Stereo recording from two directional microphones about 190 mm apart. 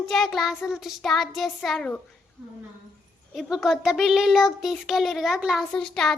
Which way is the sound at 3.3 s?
Centre (ahead or behind).